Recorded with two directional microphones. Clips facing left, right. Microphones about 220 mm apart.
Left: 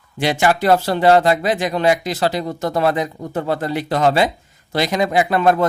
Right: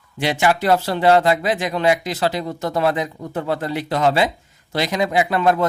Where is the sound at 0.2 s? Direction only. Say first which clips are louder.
Left 2 dB; 45° left (ahead or behind).